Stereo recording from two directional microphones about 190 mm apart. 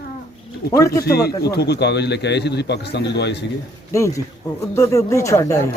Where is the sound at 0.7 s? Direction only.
15° left (ahead or behind).